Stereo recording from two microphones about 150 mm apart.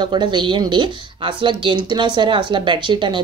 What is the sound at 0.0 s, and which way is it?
Speech, 30° right (ahead or behind).